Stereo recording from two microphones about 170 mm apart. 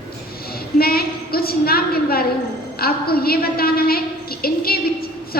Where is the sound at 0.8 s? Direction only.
65° left (ahead or behind).